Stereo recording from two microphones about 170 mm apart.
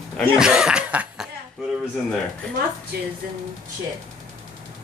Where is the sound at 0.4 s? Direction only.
5° right (ahead or behind).